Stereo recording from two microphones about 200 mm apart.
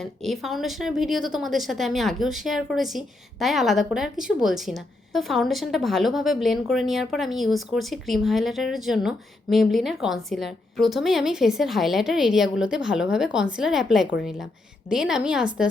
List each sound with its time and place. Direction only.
0.0 s a woman's voice: centre (ahead or behind)